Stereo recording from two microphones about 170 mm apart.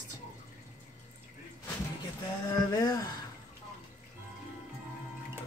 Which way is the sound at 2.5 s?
20° left (ahead or behind).